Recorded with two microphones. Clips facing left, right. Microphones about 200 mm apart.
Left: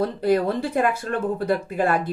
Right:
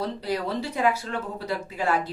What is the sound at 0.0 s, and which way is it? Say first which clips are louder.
Speech: left 8 dB; 55° left (ahead or behind).